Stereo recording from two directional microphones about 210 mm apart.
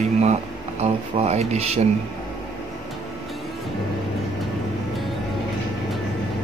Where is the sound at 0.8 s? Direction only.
30° right (ahead or behind).